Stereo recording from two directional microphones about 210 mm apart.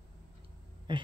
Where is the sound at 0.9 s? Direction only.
20° right (ahead or behind).